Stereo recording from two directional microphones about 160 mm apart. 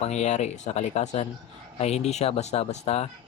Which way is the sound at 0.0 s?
45° left (ahead or behind).